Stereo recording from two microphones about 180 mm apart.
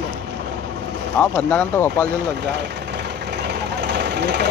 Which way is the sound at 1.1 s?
5° left (ahead or behind).